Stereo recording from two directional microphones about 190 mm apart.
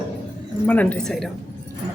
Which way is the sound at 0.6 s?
10° left (ahead or behind).